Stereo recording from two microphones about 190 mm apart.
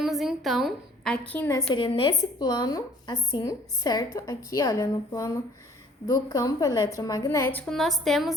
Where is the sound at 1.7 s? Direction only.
25° left (ahead or behind).